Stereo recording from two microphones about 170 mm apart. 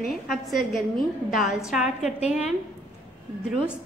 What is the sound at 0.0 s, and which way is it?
A woman's voice, centre (ahead or behind).